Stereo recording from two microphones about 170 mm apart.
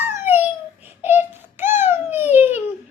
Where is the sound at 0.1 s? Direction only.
10° right (ahead or behind).